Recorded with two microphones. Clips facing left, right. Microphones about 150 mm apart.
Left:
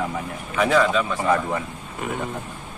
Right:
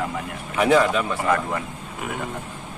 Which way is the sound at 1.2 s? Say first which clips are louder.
Left 1 dB; centre (ahead or behind).